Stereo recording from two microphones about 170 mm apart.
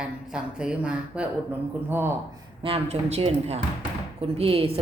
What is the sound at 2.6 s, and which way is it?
A woman's voice, 35° right (ahead or behind).